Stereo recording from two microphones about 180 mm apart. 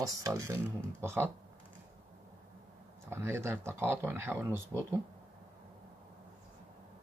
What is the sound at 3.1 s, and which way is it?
Speech, 15° right (ahead or behind).